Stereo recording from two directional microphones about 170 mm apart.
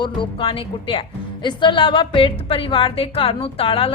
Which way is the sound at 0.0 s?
30° left (ahead or behind).